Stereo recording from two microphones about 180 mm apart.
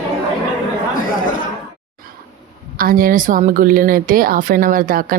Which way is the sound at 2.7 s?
50° right (ahead or behind).